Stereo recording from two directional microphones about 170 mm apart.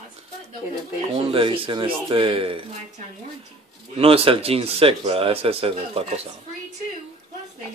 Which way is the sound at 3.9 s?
35° right (ahead or behind).